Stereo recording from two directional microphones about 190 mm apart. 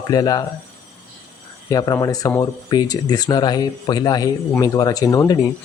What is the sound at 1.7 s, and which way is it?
Speech, 20° left (ahead or behind).